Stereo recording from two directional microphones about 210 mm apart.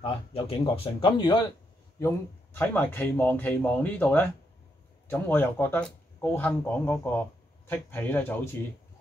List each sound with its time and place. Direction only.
0.0 s speech: 25° left (ahead or behind)
2.0 s speech: 10° left (ahead or behind)